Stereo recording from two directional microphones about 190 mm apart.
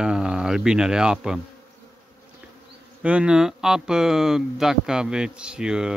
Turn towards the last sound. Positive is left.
turn(degrees=-5)  # may be behind; listen again after turning